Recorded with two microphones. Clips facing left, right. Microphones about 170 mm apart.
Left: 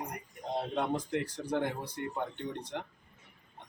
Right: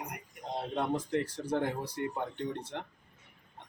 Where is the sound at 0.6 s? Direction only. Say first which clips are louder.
Even; centre (ahead or behind).